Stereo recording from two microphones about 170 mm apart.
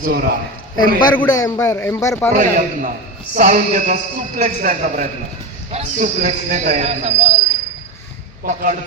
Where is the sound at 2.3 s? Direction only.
55° right (ahead or behind).